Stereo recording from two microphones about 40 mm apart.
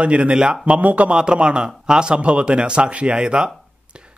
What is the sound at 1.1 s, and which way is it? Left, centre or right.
A man's voice, right.